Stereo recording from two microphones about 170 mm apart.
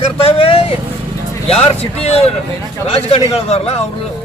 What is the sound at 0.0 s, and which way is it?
Vehicle, 35° left (ahead or behind).